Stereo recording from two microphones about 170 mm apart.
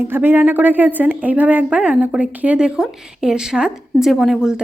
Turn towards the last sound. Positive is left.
turn(degrees=-5)  # may be behind; listen again after turning